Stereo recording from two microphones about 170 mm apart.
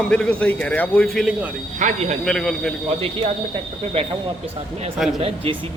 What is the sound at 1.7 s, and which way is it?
Speech, 45° right (ahead or behind).